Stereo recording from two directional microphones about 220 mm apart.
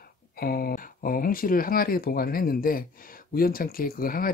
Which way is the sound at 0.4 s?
45° left (ahead or behind).